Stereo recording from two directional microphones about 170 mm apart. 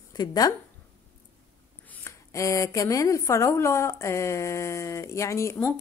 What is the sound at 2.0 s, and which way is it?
Speech, 20° left (ahead or behind).